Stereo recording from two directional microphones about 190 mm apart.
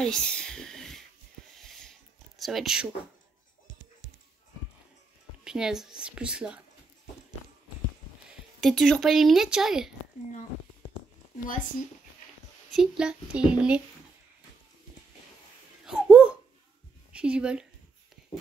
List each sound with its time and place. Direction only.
0.0 s speech: 5° left (ahead or behind)
1.6 s a sound: centre (ahead or behind)
5.4 s a woman's voice: 5° right (ahead or behind)
8.5 s a woman's voice: centre (ahead or behind)
12.7 s a woman's voice: 5° right (ahead or behind)
15.8 s laughter: 5° right (ahead or behind)
17.1 s a woman's voice: 5° right (ahead or behind)